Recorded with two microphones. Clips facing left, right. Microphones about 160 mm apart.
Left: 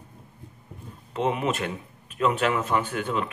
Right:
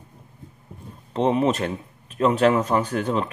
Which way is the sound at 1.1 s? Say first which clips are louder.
Right 5 dB; 35° right (ahead or behind).